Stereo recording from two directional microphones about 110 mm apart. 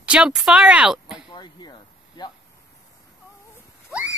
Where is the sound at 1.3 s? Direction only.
45° left (ahead or behind).